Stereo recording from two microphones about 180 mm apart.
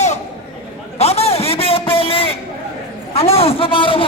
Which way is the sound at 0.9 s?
35° left (ahead or behind).